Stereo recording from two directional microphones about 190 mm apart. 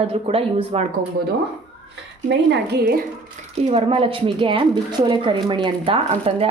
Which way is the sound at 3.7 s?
30° right (ahead or behind).